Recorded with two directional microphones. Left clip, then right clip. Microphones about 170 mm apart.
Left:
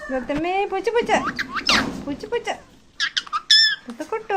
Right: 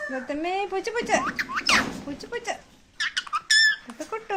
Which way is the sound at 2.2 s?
25° left (ahead or behind).